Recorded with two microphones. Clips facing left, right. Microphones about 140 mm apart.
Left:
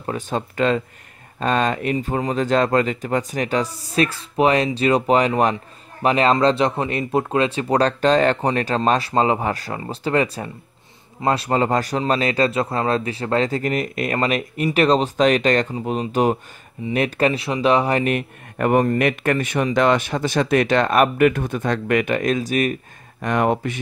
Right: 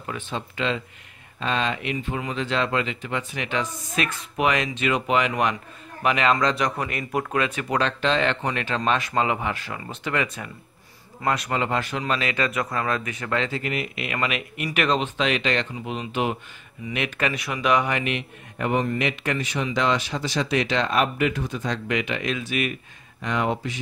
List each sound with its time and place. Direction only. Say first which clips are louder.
0.0 s speech: left 6 dB; 40° left (ahead or behind)
23.2 s speech: left 6 dB; 55° left (ahead or behind)